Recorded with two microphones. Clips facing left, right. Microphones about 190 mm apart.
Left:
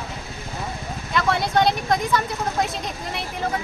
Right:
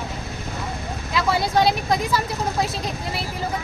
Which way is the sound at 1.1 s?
5° right (ahead or behind).